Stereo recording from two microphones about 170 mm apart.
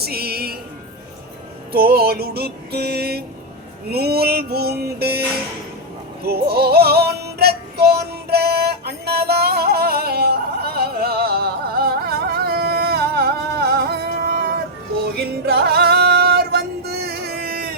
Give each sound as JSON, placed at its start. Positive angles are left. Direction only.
{"t": 0.0, "sound": "a sound", "side_deg": -65}
{"t": 1.7, "sound": "music", "side_deg": -65}
{"t": 6.2, "sound": "music", "side_deg": -70}